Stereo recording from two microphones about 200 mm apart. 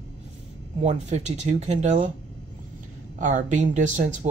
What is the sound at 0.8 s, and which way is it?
Speech, 35° right (ahead or behind).